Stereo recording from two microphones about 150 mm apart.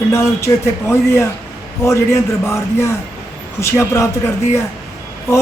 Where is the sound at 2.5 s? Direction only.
20° left (ahead or behind).